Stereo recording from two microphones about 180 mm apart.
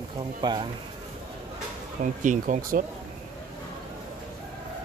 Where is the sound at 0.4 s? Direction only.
25° right (ahead or behind).